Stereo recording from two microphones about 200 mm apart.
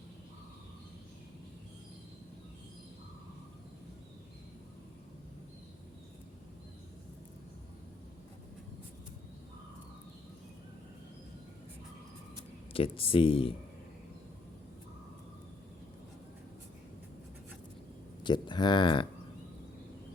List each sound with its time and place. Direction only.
12.7 s speech: 30° left (ahead or behind)
18.2 s speech: 20° left (ahead or behind)